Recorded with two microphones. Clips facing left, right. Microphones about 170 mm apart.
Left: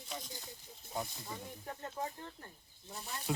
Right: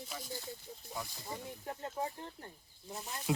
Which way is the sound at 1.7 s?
25° right (ahead or behind).